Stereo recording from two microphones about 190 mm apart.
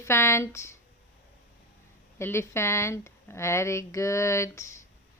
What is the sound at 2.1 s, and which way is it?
Speech, 15° left (ahead or behind).